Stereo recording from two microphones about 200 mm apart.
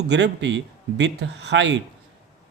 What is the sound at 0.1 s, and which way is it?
Speech, 60° right (ahead or behind).